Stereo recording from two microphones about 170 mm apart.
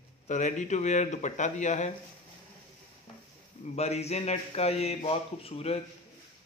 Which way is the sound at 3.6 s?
40° left (ahead or behind).